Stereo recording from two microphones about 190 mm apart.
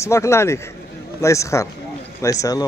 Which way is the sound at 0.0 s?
15° left (ahead or behind).